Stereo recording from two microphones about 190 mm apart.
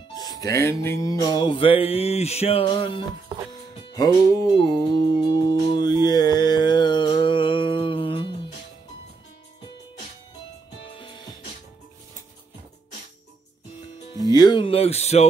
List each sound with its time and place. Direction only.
0.1 s music: 20° left (ahead or behind)
10.9 s music: 25° left (ahead or behind)
14.3 s a sound: 20° left (ahead or behind)